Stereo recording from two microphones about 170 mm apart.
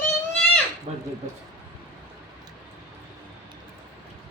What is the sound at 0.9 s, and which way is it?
Speech, 40° right (ahead or behind).